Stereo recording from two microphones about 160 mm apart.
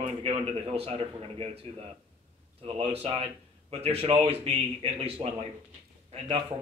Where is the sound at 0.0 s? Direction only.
35° right (ahead or behind).